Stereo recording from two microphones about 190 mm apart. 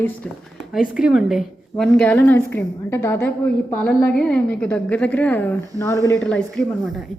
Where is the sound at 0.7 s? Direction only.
5° right (ahead or behind).